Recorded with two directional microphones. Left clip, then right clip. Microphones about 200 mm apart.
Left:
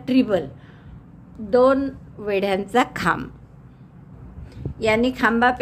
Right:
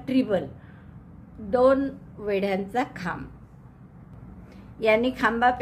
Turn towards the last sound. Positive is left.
turn(degrees=15)  # may be behind; listen again after turning